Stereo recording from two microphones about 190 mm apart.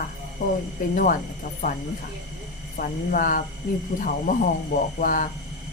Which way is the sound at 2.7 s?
45° left (ahead or behind).